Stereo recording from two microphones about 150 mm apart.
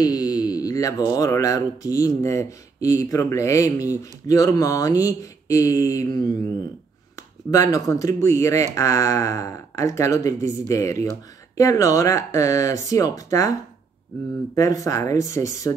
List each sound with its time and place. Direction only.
0.0 s speech: 25° left (ahead or behind)